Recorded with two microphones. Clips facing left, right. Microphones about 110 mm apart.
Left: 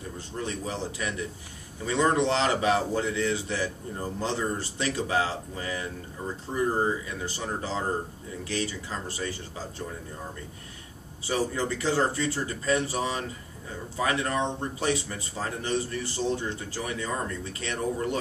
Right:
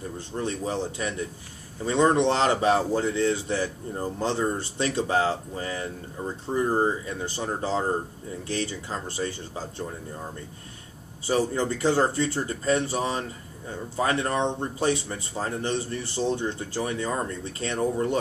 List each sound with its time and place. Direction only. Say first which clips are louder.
0.3 s a man's voice: right 4 dB; 30° right (ahead or behind)
4.7 s a man's voice: right 3 dB; 35° right (ahead or behind)
11.2 s speech: right 3 dB; 30° right (ahead or behind)